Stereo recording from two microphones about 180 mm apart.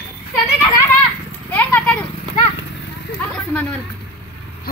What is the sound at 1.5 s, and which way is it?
Horse, 10° left (ahead or behind).